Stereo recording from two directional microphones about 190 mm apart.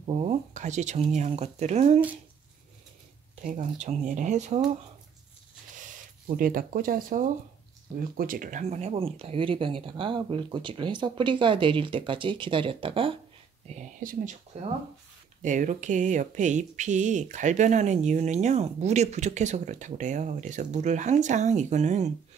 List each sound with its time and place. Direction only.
0.0 s speech: 35° right (ahead or behind)
3.4 s speech: 40° right (ahead or behind)
5.8 s speech: 45° right (ahead or behind); by 13.1 s 30° right (ahead or behind)
13.7 s speech: 40° right (ahead or behind)
14.5 s speech: 35° right (ahead or behind)